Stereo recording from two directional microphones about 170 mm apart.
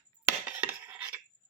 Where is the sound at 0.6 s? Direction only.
10° right (ahead or behind).